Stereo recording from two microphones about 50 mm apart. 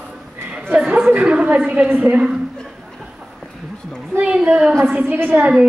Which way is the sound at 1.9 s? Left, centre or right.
Right.